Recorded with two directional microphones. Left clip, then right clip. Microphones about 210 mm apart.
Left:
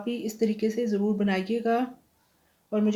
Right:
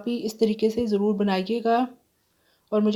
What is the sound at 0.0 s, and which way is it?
Speech, 35° right (ahead or behind).